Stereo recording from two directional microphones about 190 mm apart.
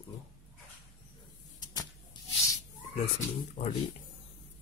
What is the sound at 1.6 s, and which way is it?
Vehicle, 20° left (ahead or behind).